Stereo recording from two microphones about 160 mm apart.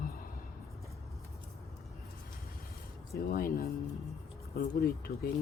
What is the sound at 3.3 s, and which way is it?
Speech, 70° left (ahead or behind).